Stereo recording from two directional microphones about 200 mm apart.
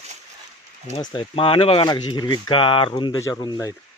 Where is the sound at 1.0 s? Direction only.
25° left (ahead or behind).